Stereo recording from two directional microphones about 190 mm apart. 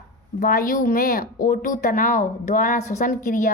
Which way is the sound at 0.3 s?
45° left (ahead or behind).